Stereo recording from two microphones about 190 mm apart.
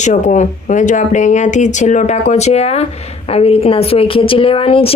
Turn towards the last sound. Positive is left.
turn(degrees=30)  # may be behind; listen again after turning